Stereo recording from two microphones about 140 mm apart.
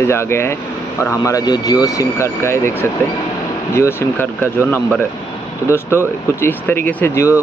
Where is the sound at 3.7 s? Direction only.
15° left (ahead or behind).